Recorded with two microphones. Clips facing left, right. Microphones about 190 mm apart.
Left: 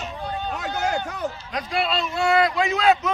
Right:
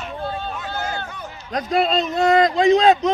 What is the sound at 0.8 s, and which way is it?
Run, 80° left.